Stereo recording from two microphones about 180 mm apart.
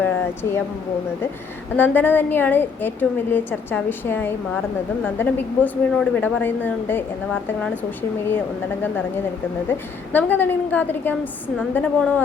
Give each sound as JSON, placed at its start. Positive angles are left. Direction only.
{"t": 0.4, "sound": "a woman's voice", "side_deg": 15}
{"t": 1.7, "sound": "a woman's voice", "side_deg": 10}
{"t": 9.6, "sound": "a woman's voice", "side_deg": 10}